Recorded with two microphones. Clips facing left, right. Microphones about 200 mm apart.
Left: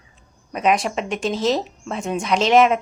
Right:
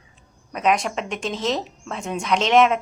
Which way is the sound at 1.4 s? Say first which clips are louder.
Left 4 dB; 35° left (ahead or behind).